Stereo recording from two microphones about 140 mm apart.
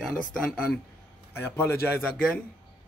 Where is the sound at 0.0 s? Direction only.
5° left (ahead or behind).